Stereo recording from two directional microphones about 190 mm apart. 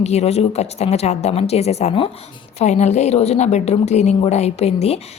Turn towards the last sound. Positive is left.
turn(degrees=30)  # may be behind; listen again after turning